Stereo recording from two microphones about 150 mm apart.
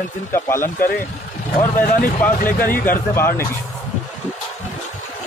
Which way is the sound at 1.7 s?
65° left (ahead or behind).